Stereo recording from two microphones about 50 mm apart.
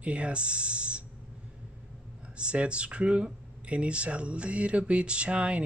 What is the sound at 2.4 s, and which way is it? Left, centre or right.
Speech, right.